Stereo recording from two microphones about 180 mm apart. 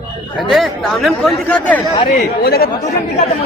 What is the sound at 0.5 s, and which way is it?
Speech, centre (ahead or behind).